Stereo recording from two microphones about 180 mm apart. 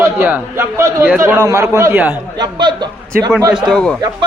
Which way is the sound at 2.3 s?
25° right (ahead or behind).